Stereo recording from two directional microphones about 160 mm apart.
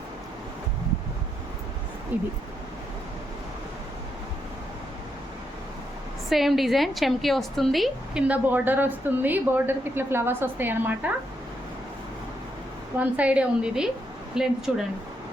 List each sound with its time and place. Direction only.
2.1 s a woman's voice: 10° right (ahead or behind)
6.2 s a woman's voice: centre (ahead or behind)
13.0 s a woman's voice: 10° right (ahead or behind)